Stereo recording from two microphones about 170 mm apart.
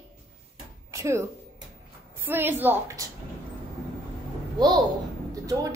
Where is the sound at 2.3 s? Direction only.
10° right (ahead or behind).